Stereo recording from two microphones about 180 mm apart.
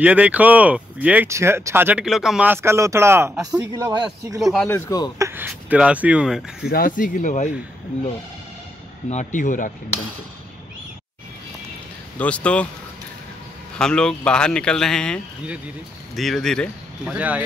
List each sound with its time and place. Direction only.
0.0 s speech: 10° right (ahead or behind)
4.4 s speech: centre (ahead or behind)
4.6 s speech: 15° left (ahead or behind)
5.2 s speech: 10° right (ahead or behind)
6.7 s speech: 50° left (ahead or behind)
9.1 s speech: 45° left (ahead or behind)
12.2 s speech: 5° left (ahead or behind)
13.7 s speech: 5° left (ahead or behind)
17.1 s speech: 10° right (ahead or behind)